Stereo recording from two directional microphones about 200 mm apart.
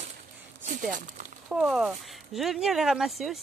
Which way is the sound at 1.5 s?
Centre (ahead or behind).